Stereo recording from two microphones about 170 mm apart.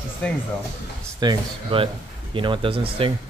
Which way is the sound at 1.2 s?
30° right (ahead or behind).